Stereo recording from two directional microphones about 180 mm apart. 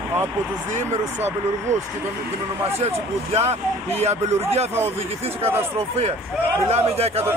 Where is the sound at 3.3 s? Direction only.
35° right (ahead or behind).